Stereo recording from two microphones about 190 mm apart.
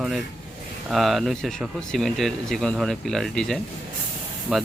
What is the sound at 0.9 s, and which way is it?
Speech, centre (ahead or behind).